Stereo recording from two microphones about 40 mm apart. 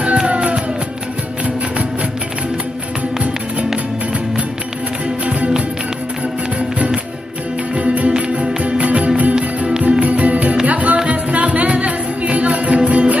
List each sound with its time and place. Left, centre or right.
0.3 s music: right
7.7 s music: right